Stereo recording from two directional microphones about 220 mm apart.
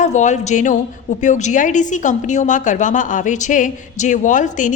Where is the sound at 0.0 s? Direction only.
35° left (ahead or behind).